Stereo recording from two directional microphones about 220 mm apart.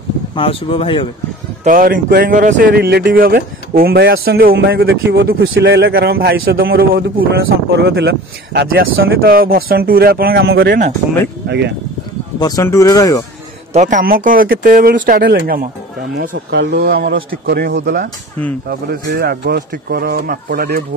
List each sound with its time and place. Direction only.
0.4 s speech: 25° left (ahead or behind)
1.6 s speech: 35° right (ahead or behind)
4.8 s speech: 55° right (ahead or behind)
12.4 s speech: 15° left (ahead or behind)
13.7 s a man's voice: 35° right (ahead or behind)